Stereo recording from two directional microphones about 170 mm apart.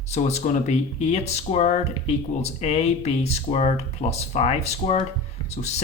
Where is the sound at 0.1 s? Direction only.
40° left (ahead or behind).